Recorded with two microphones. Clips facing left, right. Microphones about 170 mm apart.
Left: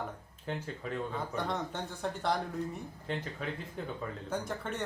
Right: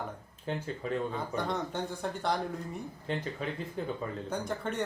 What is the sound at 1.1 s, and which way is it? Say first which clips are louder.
A man's voice: right 2 dB; centre (ahead or behind).